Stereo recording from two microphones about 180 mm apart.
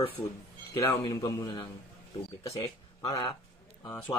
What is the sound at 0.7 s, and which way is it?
A man's voice, 20° left (ahead or behind).